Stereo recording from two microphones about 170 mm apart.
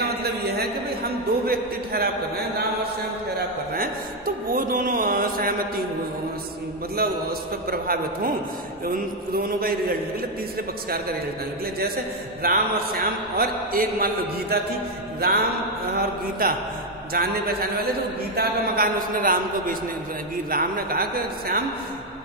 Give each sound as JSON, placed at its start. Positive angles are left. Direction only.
{"t": 0.0, "sound": "a sound", "side_deg": -70}
{"t": 1.4, "sound": "a man's voice", "side_deg": -65}
{"t": 7.7, "sound": "a man's voice", "side_deg": -60}
{"t": 12.4, "sound": "a man's voice", "side_deg": -60}